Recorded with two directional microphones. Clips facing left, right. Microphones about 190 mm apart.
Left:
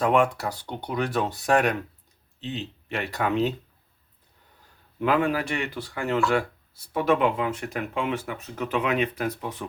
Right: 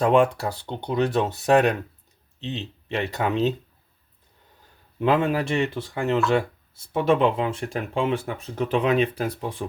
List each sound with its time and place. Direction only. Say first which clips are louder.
0.0 s speech: right 3 dB; 25° right (ahead or behind)
4.9 s speech: right 2 dB; 25° right (ahead or behind)